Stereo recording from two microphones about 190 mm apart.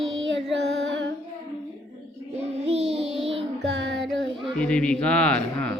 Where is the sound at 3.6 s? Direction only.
65° right (ahead or behind).